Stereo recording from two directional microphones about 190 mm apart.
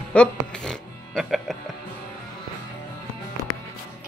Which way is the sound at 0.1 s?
5° left (ahead or behind).